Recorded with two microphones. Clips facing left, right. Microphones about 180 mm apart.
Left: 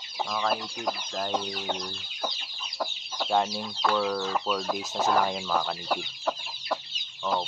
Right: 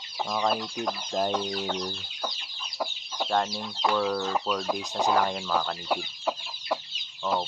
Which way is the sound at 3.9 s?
5° right (ahead or behind).